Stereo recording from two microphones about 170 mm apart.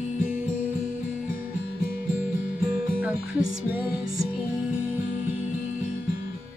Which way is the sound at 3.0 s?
10° right (ahead or behind).